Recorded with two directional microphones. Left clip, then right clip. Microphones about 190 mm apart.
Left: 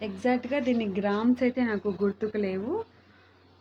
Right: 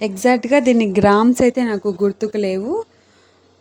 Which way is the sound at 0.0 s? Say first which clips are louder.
Right 12 dB; 50° right (ahead or behind).